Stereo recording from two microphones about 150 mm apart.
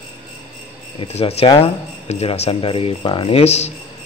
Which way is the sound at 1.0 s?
40° left (ahead or behind).